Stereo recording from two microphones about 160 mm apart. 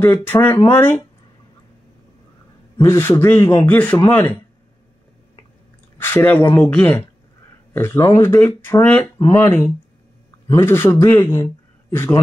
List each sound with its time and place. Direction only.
0.0 s speech: 15° left (ahead or behind)
2.8 s speech: 15° left (ahead or behind)
5.9 s a man's voice: 15° left (ahead or behind)